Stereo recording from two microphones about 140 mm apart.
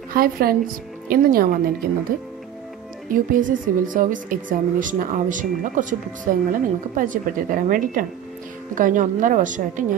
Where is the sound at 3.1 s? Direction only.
75° right (ahead or behind).